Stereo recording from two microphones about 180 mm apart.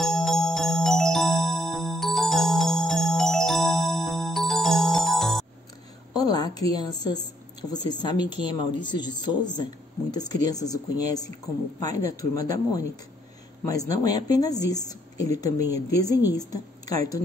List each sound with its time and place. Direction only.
0.0 s music: centre (ahead or behind)
6.1 s a sound: 20° left (ahead or behind)
7.7 s a woman's voice: 25° left (ahead or behind)